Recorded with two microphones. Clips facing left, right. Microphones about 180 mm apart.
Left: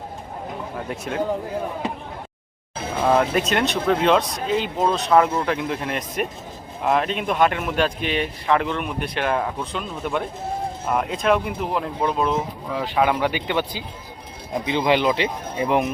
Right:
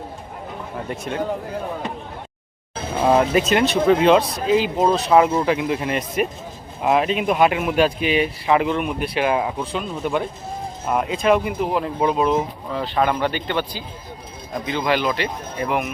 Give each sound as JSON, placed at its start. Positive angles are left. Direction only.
{"t": 0.9, "sound": "speech", "side_deg": 0}
{"t": 3.0, "sound": "speech", "side_deg": -10}
{"t": 12.7, "sound": "speech", "side_deg": 10}
{"t": 14.7, "sound": "speech", "side_deg": 20}